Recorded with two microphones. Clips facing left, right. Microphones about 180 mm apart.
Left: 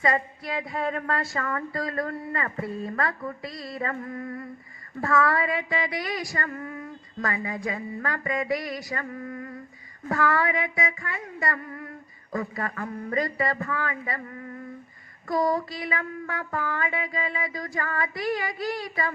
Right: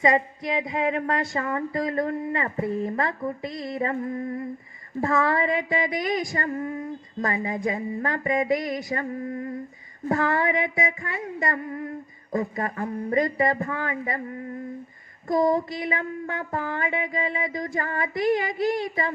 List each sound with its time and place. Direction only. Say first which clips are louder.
0.0 s a woman's voice: right 4 dB; 20° right (ahead or behind)